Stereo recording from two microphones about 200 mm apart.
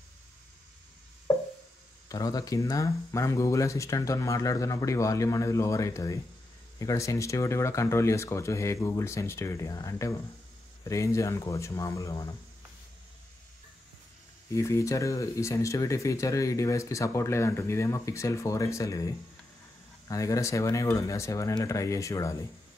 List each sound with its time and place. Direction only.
2.0 s speech: 20° left (ahead or behind)
14.5 s speech: 15° left (ahead or behind)